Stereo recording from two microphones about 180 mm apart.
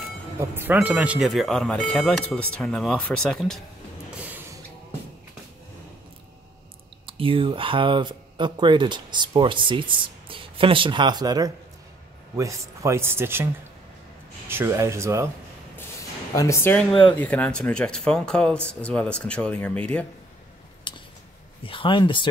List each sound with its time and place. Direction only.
0.4 s speech: 15° right (ahead or behind)
4.1 s music: 10° right (ahead or behind)
7.1 s speech: 30° right (ahead or behind); by 13.5 s 15° right (ahead or behind)
14.5 s speech: 15° right (ahead or behind)
16.3 s speech: 15° left (ahead or behind)
20.9 s a sound: 25° left (ahead or behind)
21.6 s speech: 30° left (ahead or behind)